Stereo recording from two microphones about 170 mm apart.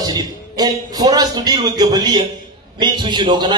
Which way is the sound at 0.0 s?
20° right (ahead or behind).